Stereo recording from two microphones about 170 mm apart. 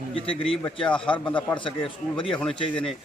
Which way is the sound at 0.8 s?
5° left (ahead or behind).